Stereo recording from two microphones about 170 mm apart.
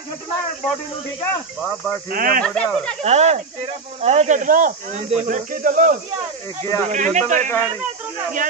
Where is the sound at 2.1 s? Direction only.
55° right (ahead or behind).